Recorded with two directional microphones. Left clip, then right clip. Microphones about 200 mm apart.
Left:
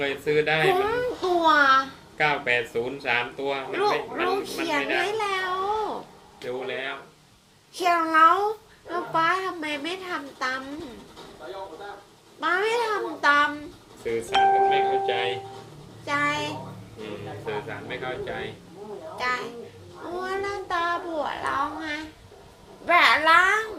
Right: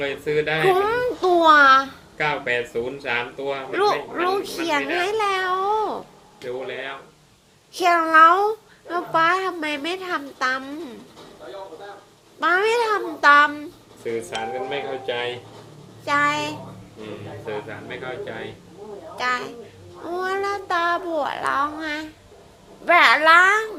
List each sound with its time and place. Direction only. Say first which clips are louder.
0.0 s speech: right 1 dB; centre (ahead or behind)
0.8 s a sound: right 4 dB; 55° right (ahead or behind)
2.1 s speech: even; 5° right (ahead or behind)
3.7 s child singing: right 5 dB; 55° right (ahead or behind)
4.6 s cat: right 2 dB; 50° right (ahead or behind)
6.4 s speech: right 1 dB; 5° right (ahead or behind)
7.7 s babbling: right 5 dB; 50° right (ahead or behind)
12.4 s child singing: right 5 dB; 50° right (ahead or behind)
14.0 s speech: left 6 dB; 5° right (ahead or behind)
16.0 s child singing: right 5 dB; 50° right (ahead or behind)
17.4 s speech: right 1 dB; centre (ahead or behind)
19.1 s speech: right 4 dB; 50° right (ahead or behind)
20.1 s child singing: right 5 dB; 50° right (ahead or behind)